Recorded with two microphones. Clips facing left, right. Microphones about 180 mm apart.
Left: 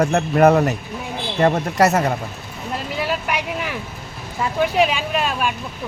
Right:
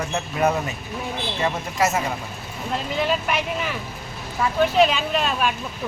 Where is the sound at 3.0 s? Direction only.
10° left (ahead or behind).